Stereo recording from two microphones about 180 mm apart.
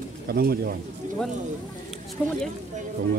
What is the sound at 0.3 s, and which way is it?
Speech, 60° right (ahead or behind).